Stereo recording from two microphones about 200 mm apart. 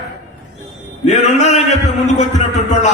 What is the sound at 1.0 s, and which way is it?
Speech, 35° left (ahead or behind).